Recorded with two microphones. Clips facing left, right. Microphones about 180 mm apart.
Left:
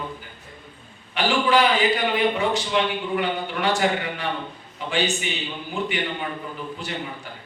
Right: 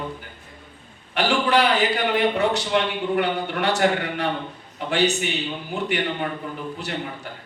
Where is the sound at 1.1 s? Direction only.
65° right (ahead or behind).